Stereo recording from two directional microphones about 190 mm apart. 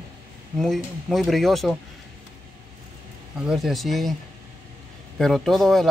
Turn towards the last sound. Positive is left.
turn(degrees=0)  # may be behind; listen again after turning